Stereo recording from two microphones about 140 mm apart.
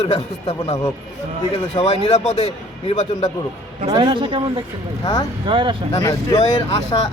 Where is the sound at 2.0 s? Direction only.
50° left (ahead or behind).